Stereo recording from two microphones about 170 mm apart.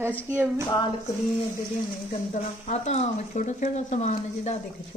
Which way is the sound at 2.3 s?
40° left (ahead or behind).